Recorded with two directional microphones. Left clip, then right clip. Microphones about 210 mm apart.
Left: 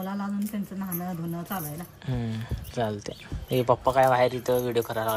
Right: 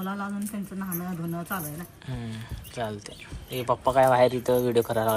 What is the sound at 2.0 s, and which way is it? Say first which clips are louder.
Speech: left 6 dB; 20° left (ahead or behind).